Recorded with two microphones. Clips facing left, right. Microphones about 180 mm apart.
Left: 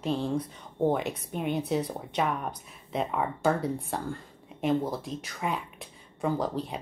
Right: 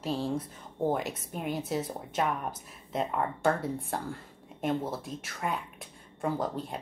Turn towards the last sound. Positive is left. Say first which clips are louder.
# left 2 dB
turn(degrees=0)  # may be behind; listen again after turning